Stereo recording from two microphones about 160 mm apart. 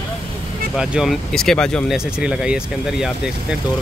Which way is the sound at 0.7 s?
5° right (ahead or behind).